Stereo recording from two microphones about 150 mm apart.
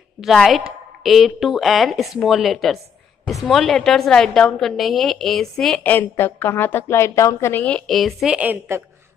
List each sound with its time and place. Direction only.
0.2 s a woman's voice: centre (ahead or behind)
5.9 s a woman's voice: 15° left (ahead or behind); by 8.8 s 15° right (ahead or behind)